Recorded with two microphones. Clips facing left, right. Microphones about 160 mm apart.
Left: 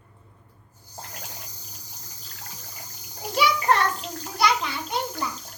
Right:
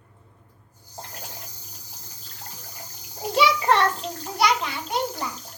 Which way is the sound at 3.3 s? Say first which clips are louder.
Right 2 dB; 25° right (ahead or behind).